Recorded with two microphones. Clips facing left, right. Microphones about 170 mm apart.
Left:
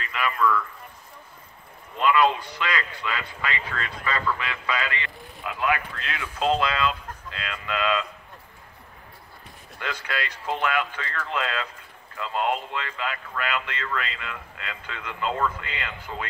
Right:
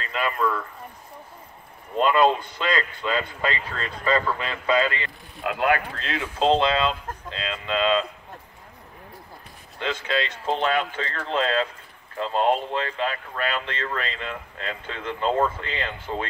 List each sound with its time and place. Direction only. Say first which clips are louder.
0.0 s a sound: even; 30° right (ahead or behind)
2.0 s speech: right 2 dB; 30° right (ahead or behind)
2.3 s a man's voice: right 3 dB; 50° right (ahead or behind)
2.6 s speech: right 3 dB; 25° right (ahead or behind)
5.4 s speech: right 4 dB; 60° right (ahead or behind)
5.7 s speech: right 2 dB; 35° right (ahead or behind)
9.8 s speech: right 5 dB; 25° right (ahead or behind)